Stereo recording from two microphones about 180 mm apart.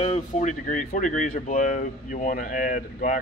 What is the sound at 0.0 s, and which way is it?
Speech, 40° left (ahead or behind).